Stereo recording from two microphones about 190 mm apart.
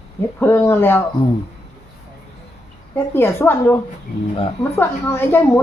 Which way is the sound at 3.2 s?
10° left (ahead or behind).